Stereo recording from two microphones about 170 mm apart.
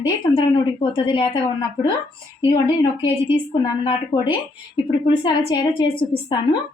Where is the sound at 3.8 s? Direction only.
30° left (ahead or behind).